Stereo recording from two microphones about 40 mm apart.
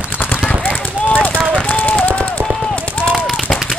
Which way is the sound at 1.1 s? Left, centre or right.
Left.